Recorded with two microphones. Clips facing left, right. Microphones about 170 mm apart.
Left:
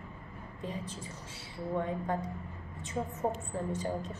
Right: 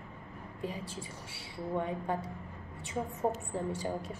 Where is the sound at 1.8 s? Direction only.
15° right (ahead or behind).